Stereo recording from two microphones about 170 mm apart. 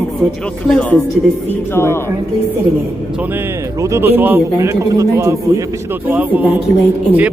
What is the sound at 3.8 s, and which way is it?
A man's voice, 15° right (ahead or behind).